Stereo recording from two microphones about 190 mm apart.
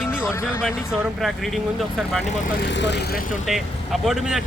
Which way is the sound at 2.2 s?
45° left (ahead or behind).